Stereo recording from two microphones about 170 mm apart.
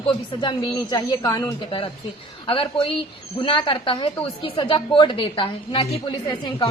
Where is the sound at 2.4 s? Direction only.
30° left (ahead or behind).